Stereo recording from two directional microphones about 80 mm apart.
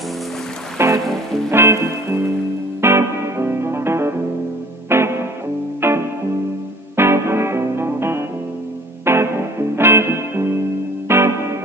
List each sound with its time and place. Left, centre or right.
0.7 s music: right